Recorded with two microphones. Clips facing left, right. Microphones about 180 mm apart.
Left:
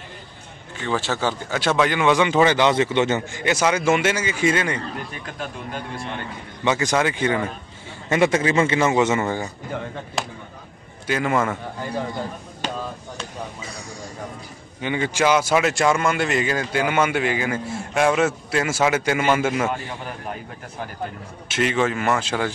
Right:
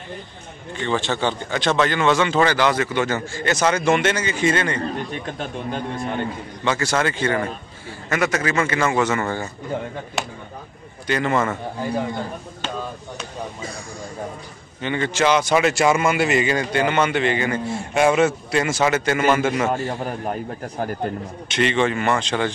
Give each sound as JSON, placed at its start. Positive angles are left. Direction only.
{"t": 0.7, "sound": "speech", "side_deg": 5}
{"t": 5.1, "sound": "a man's voice", "side_deg": -30}
{"t": 6.6, "sound": "speech", "side_deg": 15}
{"t": 8.1, "sound": "a man's voice", "side_deg": 25}
{"t": 11.1, "sound": "speech", "side_deg": 5}
{"t": 14.8, "sound": "speech", "side_deg": 10}
{"t": 19.9, "sound": "a man's voice", "side_deg": -40}
{"t": 21.5, "sound": "speech", "side_deg": 5}